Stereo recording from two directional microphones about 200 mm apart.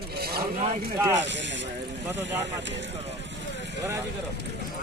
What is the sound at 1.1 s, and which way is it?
Speech, 65° right (ahead or behind).